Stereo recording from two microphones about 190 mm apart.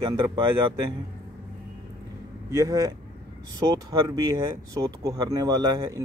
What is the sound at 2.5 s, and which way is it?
Speech, 15° right (ahead or behind).